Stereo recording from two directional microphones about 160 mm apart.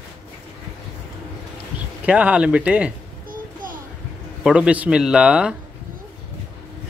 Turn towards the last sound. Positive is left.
turn(degrees=-5)  # may be behind; listen again after turning